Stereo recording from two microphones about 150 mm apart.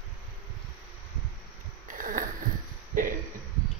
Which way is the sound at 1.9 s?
65° right (ahead or behind).